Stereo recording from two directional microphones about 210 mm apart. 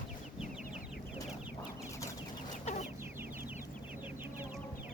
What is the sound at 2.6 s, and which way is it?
Chicken, 35° left (ahead or behind).